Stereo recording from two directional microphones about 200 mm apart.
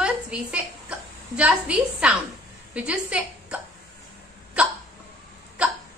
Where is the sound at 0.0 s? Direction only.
5° right (ahead or behind).